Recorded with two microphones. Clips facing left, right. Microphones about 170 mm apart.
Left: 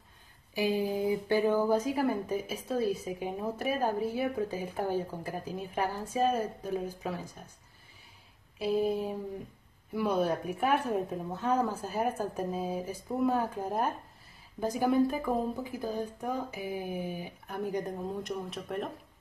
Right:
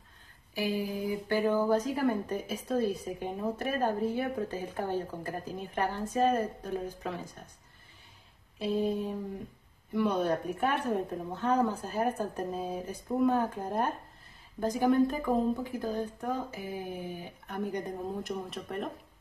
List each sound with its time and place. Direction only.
0.6 s a sound: 20° left (ahead or behind)
1.3 s a woman's voice: 15° left (ahead or behind)
8.5 s a woman's voice: 10° left (ahead or behind)
9.9 s a woman's voice: 5° left (ahead or behind)
17.5 s speech: centre (ahead or behind)